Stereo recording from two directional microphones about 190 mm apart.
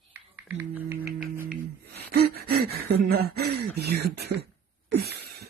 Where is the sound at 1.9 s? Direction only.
55° right (ahead or behind).